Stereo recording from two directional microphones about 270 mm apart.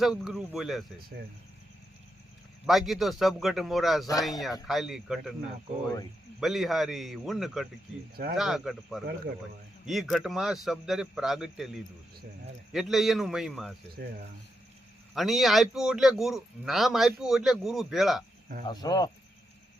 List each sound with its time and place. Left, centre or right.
0.0 s a man's voice: centre
2.6 s a man's voice: centre
6.4 s a man's voice: centre
8.1 s speech: right
8.4 s a man's voice: centre
15.1 s a man's voice: centre
18.7 s speech: centre